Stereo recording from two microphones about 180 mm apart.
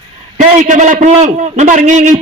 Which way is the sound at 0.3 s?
45° right (ahead or behind).